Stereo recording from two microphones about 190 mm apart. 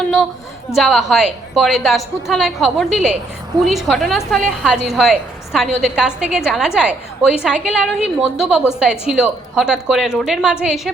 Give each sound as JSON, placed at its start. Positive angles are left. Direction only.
{"t": 0.8, "sound": "a woman's voice", "side_deg": 0}